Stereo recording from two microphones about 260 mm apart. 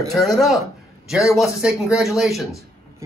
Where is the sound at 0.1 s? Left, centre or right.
Centre.